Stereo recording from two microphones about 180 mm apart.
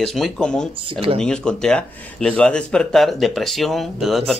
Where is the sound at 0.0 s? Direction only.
Centre (ahead or behind).